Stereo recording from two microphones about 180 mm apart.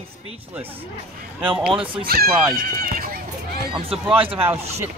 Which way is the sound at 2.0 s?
55° right (ahead or behind).